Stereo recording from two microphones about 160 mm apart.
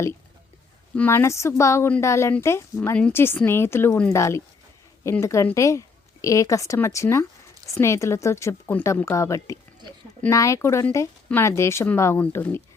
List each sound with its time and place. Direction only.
0.9 s a woman's voice: 15° left (ahead or behind)